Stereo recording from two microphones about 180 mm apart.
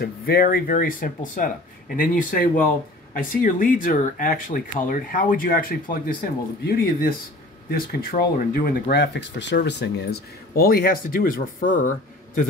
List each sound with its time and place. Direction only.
0.0 s speech: 55° left (ahead or behind)